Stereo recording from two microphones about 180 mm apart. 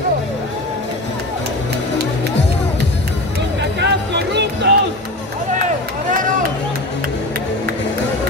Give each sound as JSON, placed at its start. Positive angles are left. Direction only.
{"t": 3.8, "sound": "music", "side_deg": -70}